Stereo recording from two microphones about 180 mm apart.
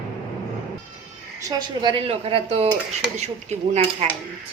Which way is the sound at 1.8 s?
30° right (ahead or behind).